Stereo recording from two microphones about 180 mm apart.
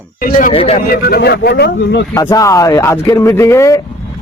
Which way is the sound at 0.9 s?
60° left (ahead or behind).